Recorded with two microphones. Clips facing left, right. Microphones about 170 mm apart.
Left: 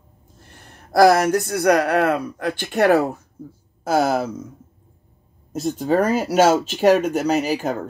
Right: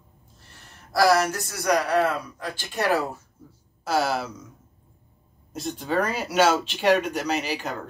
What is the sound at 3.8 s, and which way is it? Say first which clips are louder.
Speech: left 6 dB; 45° left (ahead or behind).